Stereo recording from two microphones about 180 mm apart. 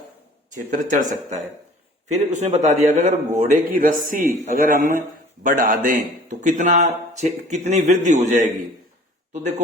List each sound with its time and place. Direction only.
0.5 s a man's voice: 45° right (ahead or behind)